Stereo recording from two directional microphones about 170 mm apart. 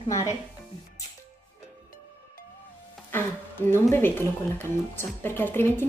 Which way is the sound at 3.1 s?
10° left (ahead or behind).